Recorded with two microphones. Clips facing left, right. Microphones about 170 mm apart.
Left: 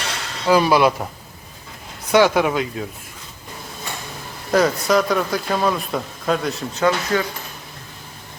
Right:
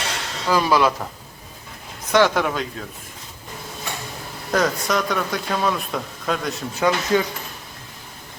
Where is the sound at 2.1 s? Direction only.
10° left (ahead or behind).